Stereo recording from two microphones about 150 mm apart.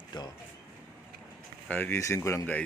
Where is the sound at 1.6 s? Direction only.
10° left (ahead or behind).